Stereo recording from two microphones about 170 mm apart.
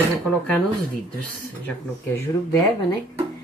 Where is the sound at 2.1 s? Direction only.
15° left (ahead or behind).